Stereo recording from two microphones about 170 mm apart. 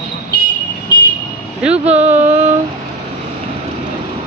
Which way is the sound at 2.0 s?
40° right (ahead or behind).